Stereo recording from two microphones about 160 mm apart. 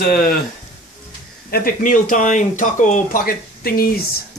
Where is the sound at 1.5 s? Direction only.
60° left (ahead or behind).